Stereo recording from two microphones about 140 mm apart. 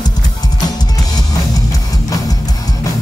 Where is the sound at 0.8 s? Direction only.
25° left (ahead or behind).